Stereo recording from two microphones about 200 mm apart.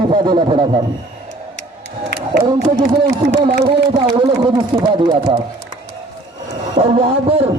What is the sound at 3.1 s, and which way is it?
A man's voice, 25° right (ahead or behind).